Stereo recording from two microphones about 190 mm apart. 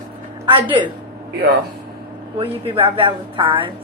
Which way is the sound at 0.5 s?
25° right (ahead or behind).